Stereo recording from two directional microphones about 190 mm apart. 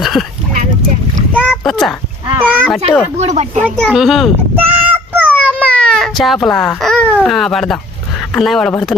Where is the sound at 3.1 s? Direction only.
35° right (ahead or behind).